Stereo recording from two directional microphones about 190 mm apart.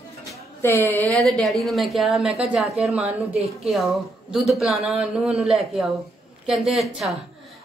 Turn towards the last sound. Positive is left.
turn(degrees=0)  # may be behind; listen again after turning